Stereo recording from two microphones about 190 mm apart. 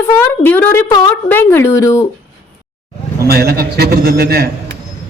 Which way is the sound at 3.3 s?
50° right (ahead or behind).